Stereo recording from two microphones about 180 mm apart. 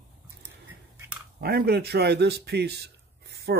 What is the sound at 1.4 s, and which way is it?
Speech, 60° right (ahead or behind).